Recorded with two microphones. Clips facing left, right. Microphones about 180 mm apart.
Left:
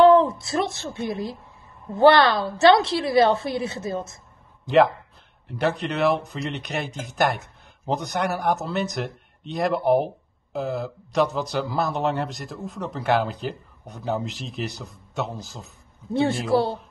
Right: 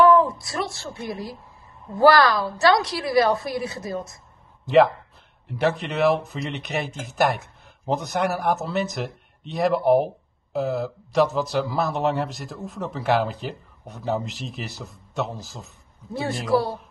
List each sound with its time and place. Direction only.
0.0 s a woman's voice: 25° left (ahead or behind)
4.6 s speech: centre (ahead or behind)
16.1 s a woman's voice: 25° left (ahead or behind)